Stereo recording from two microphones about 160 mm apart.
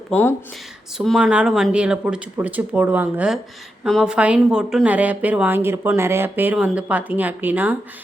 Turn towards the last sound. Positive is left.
turn(degrees=-10)  # may be behind; listen again after turning